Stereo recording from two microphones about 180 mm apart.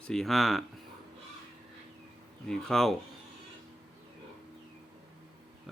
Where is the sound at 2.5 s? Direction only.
Centre (ahead or behind).